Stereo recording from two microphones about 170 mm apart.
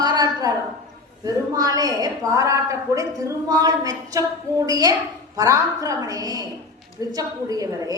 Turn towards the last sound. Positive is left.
turn(degrees=-20)  # may be behind; listen again after turning